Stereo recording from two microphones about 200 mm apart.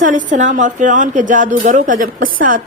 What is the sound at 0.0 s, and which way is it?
A woman's voice, 40° right (ahead or behind).